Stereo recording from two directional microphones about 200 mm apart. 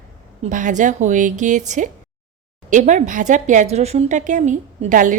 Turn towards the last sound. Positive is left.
turn(degrees=-40)  # may be behind; listen again after turning